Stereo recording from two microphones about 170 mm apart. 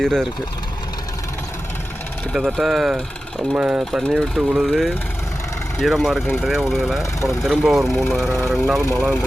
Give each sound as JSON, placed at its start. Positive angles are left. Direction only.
{"t": 0.0, "sound": "speech", "side_deg": 5}
{"t": 2.3, "sound": "speech", "side_deg": 0}